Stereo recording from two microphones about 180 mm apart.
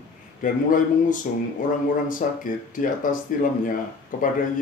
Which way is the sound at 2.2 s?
45° left (ahead or behind).